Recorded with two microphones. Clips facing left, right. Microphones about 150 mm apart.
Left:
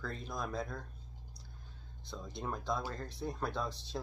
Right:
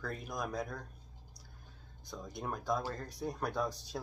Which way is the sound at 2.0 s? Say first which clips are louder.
Even; 15° right (ahead or behind).